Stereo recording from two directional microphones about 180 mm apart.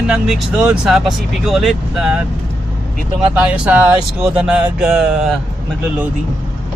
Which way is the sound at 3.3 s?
10° right (ahead or behind).